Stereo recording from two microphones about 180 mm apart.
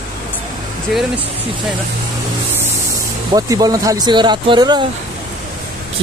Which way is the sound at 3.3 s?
20° right (ahead or behind).